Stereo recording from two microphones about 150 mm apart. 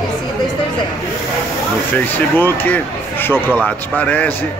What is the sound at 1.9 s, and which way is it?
Speech, 10° left (ahead or behind).